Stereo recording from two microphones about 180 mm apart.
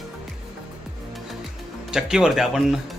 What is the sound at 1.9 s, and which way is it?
Speech, 5° right (ahead or behind).